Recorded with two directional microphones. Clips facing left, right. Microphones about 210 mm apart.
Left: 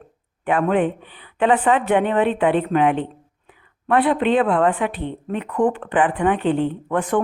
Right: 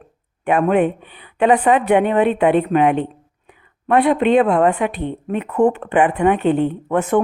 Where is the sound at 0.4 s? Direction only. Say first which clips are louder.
Right 3 dB; 20° right (ahead or behind).